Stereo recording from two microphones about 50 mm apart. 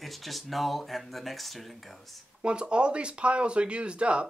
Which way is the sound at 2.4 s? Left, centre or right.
Right.